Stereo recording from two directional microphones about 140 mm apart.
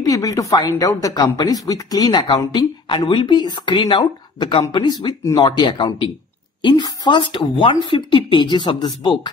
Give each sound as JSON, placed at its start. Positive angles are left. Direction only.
{"t": 0.0, "sound": "a woman's voice", "side_deg": 25}